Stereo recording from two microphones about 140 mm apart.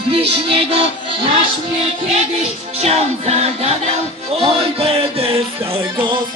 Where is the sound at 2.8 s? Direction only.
50° right (ahead or behind).